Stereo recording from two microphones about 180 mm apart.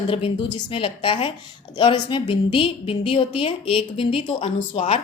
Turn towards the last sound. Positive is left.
turn(degrees=35)  # may be behind; listen again after turning